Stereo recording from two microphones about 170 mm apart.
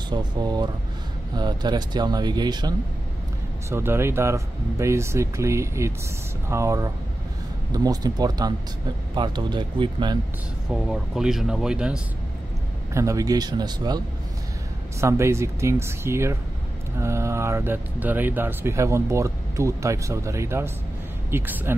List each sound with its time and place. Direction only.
0.1 s speech: 25° right (ahead or behind)
3.7 s speech: 15° right (ahead or behind)
10.7 s speech: 5° right (ahead or behind)
12.9 s speech: 20° right (ahead or behind)